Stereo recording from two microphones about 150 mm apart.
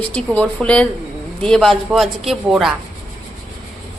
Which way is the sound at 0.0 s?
10° left (ahead or behind).